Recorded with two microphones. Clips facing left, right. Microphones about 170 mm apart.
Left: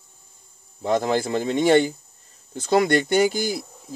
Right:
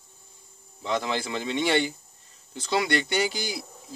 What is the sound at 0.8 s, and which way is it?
Speech, 45° left (ahead or behind).